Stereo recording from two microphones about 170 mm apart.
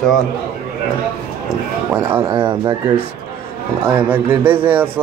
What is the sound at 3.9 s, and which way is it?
A man's voice, 10° right (ahead or behind).